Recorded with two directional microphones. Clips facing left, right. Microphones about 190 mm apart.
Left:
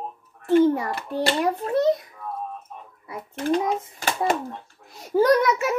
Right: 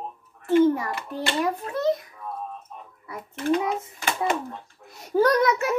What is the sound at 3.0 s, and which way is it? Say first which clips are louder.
A child's voice: even; 30° left (ahead or behind).